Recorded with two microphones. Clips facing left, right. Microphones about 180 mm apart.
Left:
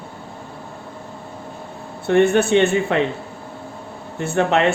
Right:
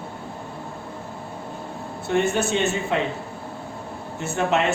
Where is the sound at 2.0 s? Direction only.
60° left (ahead or behind).